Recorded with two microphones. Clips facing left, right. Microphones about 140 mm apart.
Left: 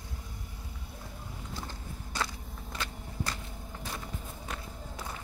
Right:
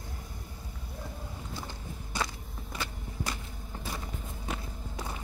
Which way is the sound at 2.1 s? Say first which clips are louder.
Right 1 dB; 10° right (ahead or behind).